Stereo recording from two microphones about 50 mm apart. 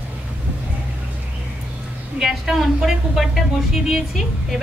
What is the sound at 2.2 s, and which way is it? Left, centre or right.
Speech, centre.